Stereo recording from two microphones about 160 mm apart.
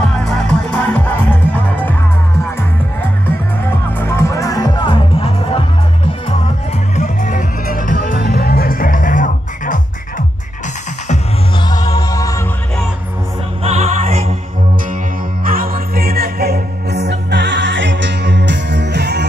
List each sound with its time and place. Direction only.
0.0 s music: 5° left (ahead or behind)
4.0 s music: 15° left (ahead or behind); by 5.6 s 35° left (ahead or behind)
7.0 s music: 50° left (ahead or behind)
11.5 s music: 25° left (ahead or behind)
13.6 s music: 45° right (ahead or behind)
15.4 s music: 65° right (ahead or behind); by 19.2 s 90° right